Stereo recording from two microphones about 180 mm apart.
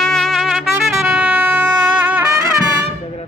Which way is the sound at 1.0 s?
10° right (ahead or behind).